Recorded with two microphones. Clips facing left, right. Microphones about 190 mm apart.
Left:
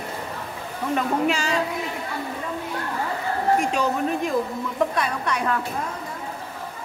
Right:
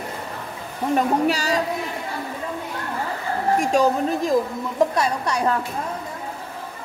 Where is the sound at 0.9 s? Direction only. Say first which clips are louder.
Right 3 dB; 40° right (ahead or behind).